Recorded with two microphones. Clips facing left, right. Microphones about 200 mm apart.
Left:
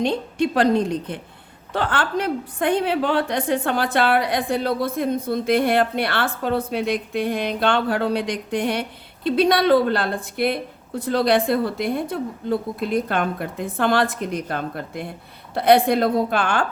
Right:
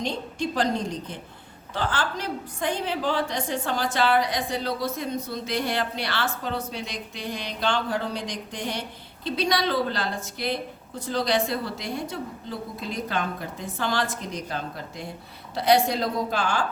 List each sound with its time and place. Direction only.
0.0 s a woman's voice: 60° left (ahead or behind)